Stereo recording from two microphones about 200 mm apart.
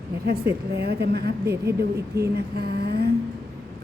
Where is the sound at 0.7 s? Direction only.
55° right (ahead or behind).